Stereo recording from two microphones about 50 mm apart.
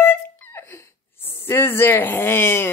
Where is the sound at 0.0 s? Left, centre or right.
Left.